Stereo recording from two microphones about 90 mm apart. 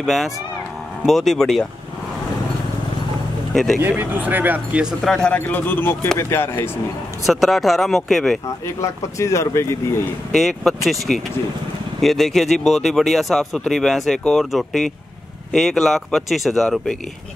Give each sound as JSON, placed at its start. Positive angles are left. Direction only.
{"t": 0.0, "sound": "speech", "side_deg": 0}
{"t": 3.8, "sound": "speech", "side_deg": -20}
{"t": 5.0, "sound": "speech", "side_deg": 5}
{"t": 5.3, "sound": "speech", "side_deg": 20}
{"t": 7.2, "sound": "speech", "side_deg": 0}
{"t": 9.0, "sound": "speech", "side_deg": 35}
{"t": 10.3, "sound": "speech", "side_deg": 0}